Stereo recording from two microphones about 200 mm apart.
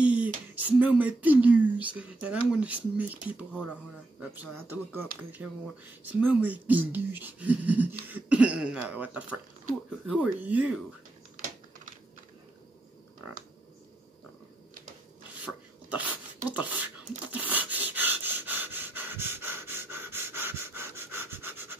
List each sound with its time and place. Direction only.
0.0 s a sound: 5° right (ahead or behind)
0.7 s speech: 10° right (ahead or behind)
15.4 s beatboxing: 5° right (ahead or behind)
17.5 s breathing: 10° right (ahead or behind)